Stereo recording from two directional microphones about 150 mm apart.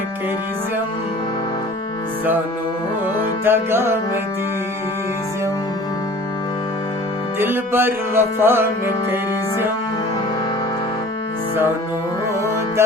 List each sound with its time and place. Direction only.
3.4 s music: 15° right (ahead or behind)
7.3 s music: 15° right (ahead or behind)